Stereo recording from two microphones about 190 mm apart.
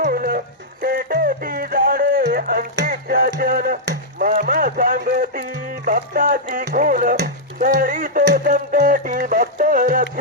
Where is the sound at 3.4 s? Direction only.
50° right (ahead or behind).